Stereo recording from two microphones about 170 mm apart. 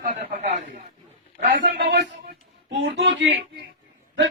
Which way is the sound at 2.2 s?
75° right (ahead or behind).